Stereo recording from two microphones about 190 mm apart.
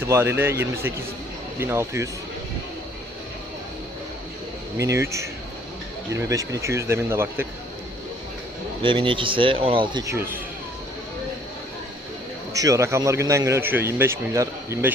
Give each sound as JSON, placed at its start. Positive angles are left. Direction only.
{"t": 0.0, "sound": "speech", "side_deg": -15}
{"t": 4.8, "sound": "speech", "side_deg": -15}
{"t": 8.8, "sound": "speech", "side_deg": -25}
{"t": 12.5, "sound": "speech", "side_deg": -15}